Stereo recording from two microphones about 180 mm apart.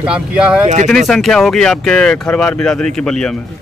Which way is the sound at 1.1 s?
Centre (ahead or behind).